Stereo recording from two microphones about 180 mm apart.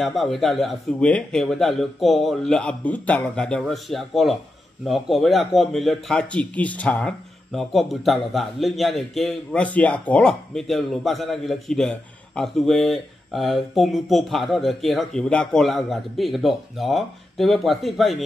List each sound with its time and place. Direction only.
0.0 s a man's voice: centre (ahead or behind)